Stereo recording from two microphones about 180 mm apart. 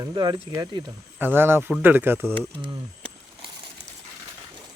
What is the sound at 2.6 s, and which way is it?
Speech, 25° right (ahead or behind).